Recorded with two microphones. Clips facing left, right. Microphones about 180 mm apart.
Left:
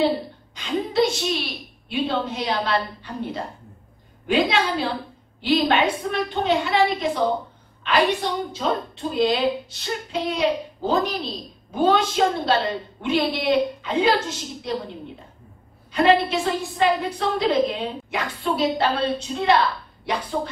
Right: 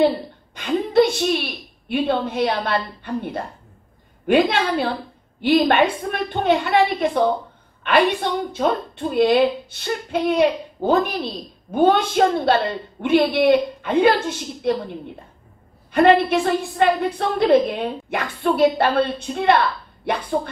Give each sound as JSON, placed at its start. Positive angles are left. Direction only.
{"t": 0.6, "sound": "a sound", "side_deg": -55}
{"t": 1.9, "sound": "a woman's voice", "side_deg": -55}
{"t": 15.9, "sound": "a woman's voice", "side_deg": -55}